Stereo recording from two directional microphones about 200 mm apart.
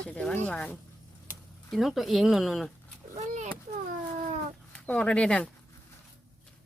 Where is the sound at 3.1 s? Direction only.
35° right (ahead or behind).